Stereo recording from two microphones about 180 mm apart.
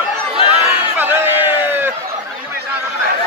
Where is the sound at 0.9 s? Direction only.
10° right (ahead or behind).